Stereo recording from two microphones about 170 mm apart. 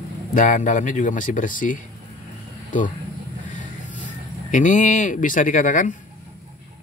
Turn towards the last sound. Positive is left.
turn(degrees=50)  # may be behind; listen again after turning